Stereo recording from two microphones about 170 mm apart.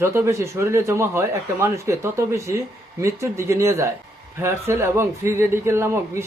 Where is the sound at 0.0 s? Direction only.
15° right (ahead or behind).